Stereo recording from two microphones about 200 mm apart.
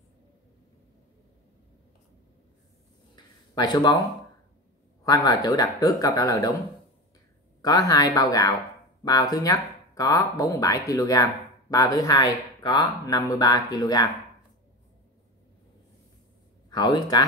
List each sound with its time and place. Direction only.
3.2 s a sound: 20° left (ahead or behind)
5.0 s speech: 20° left (ahead or behind)
7.6 s speech: 20° left (ahead or behind)
16.7 s speech: 20° left (ahead or behind)